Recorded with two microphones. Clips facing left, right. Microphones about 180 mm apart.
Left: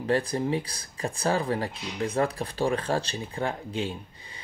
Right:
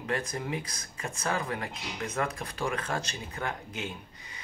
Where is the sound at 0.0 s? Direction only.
35° left (ahead or behind).